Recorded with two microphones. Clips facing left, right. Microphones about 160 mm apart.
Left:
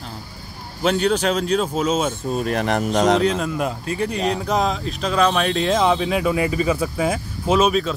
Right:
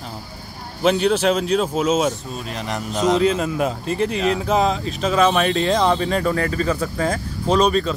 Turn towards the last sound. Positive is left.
turn(degrees=5)  # may be behind; listen again after turning